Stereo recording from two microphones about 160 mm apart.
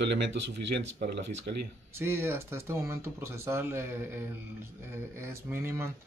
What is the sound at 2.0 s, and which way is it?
Speech, 15° right (ahead or behind).